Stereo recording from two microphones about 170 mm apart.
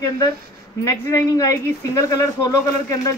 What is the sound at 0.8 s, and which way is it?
Speech, 20° left (ahead or behind).